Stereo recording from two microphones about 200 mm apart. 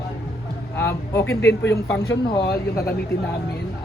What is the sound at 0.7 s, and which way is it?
A man's voice, 10° left (ahead or behind).